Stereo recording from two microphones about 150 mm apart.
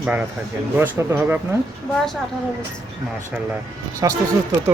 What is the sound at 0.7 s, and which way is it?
Speech, 15° right (ahead or behind).